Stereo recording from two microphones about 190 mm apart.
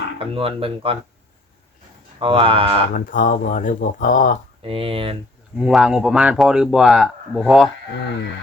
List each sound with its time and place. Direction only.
0.2 s speech: 30° right (ahead or behind)
2.1 s speech: 30° right (ahead or behind)
2.9 s speech: 45° left (ahead or behind)
4.6 s speech: 30° right (ahead or behind)
5.5 s speech: 5° right (ahead or behind)